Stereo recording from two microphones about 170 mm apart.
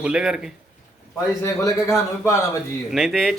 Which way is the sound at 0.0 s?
5° right (ahead or behind).